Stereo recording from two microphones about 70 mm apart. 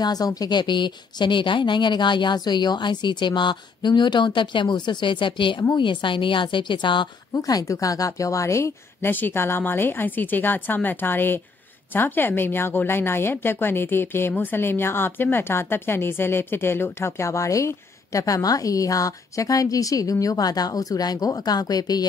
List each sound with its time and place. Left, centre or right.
0.0 s speech: left
7.3 s a woman's voice: left
9.1 s a woman's voice: left